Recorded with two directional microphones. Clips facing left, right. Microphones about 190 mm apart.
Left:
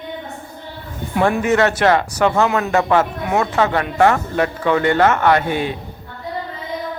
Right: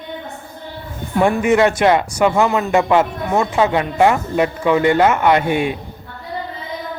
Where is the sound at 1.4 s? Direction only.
10° right (ahead or behind).